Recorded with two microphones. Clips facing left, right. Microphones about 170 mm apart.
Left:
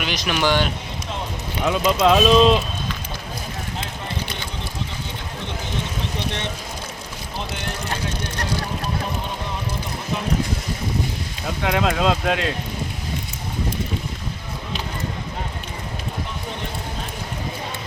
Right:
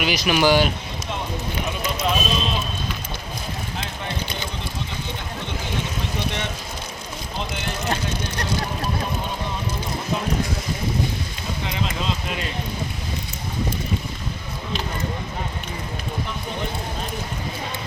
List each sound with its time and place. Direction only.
0.0 s speech: 5° right (ahead or behind)
1.6 s speech: 90° left
11.6 s speech: 85° left